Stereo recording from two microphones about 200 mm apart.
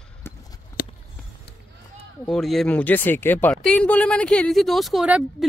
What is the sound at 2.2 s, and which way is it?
Speech, centre (ahead or behind).